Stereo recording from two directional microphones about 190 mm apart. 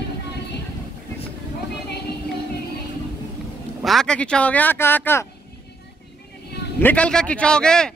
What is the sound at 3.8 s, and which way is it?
Speech, centre (ahead or behind).